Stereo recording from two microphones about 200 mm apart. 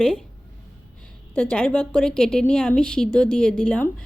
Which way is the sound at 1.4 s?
5° left (ahead or behind).